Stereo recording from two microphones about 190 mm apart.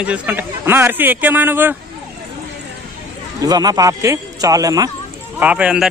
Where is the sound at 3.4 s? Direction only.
20° right (ahead or behind).